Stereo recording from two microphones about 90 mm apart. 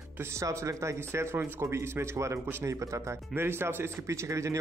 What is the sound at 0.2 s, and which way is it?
A man's voice, 35° right (ahead or behind).